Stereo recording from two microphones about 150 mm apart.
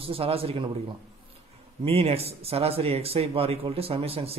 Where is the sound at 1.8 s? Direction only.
40° right (ahead or behind).